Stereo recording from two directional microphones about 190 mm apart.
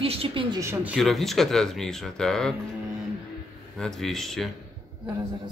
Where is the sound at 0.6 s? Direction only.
15° right (ahead or behind).